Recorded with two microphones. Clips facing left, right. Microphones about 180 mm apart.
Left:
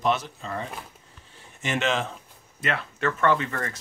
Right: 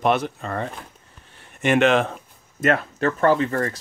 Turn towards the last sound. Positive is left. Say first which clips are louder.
# right 6 dB
turn(degrees=-40)  # may be behind; listen again after turning